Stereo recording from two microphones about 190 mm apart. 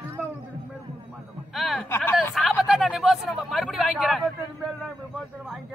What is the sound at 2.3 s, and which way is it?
Speech, centre (ahead or behind).